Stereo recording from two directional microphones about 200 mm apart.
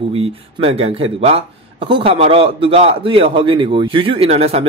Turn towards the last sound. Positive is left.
turn(degrees=-30)  # may be behind; listen again after turning